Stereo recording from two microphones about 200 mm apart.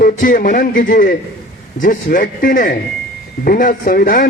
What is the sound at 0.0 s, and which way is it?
A man's voice, 45° left (ahead or behind).